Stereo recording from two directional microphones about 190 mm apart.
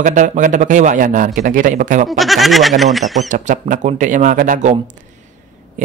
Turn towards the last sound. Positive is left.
turn(degrees=-40)  # may be behind; listen again after turning